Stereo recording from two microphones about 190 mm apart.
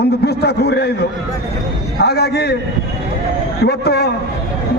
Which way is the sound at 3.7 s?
60° left (ahead or behind).